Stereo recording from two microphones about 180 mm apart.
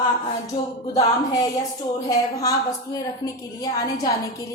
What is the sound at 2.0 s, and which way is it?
A woman's voice, 20° left (ahead or behind).